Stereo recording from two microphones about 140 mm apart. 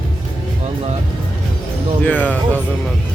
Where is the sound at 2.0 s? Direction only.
10° left (ahead or behind).